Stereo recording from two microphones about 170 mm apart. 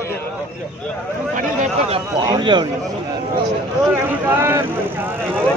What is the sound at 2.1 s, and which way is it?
Speech, 25° right (ahead or behind).